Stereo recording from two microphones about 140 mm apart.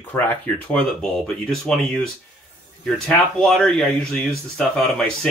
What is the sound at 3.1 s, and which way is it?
Speech, 5° left (ahead or behind).